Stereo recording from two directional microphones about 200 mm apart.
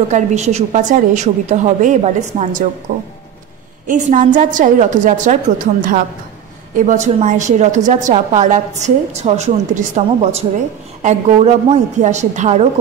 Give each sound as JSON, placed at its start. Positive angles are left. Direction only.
{"t": 0.1, "sound": "a woman's voice", "side_deg": -35}
{"t": 3.8, "sound": "a woman's voice", "side_deg": -40}